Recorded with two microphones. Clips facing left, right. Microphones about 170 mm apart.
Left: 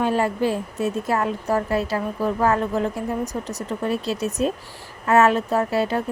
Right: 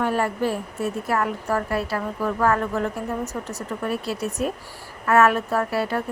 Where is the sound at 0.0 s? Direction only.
15° left (ahead or behind).